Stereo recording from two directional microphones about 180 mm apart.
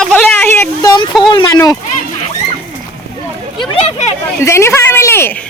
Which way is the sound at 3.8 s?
35° left (ahead or behind).